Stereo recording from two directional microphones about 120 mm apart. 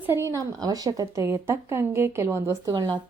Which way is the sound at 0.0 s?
20° right (ahead or behind).